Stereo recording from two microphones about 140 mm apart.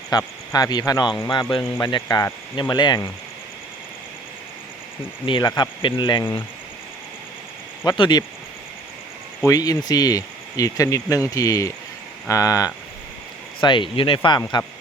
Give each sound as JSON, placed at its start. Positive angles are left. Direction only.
{"t": 0.1, "sound": "speech", "side_deg": 25}
{"t": 5.2, "sound": "speech", "side_deg": 30}
{"t": 7.9, "sound": "speech", "side_deg": 30}
{"t": 9.4, "sound": "speech", "side_deg": 25}
{"t": 13.6, "sound": "speech", "side_deg": 35}